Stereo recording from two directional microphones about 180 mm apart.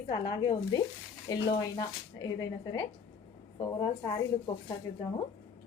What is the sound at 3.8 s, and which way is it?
Speech, 25° left (ahead or behind).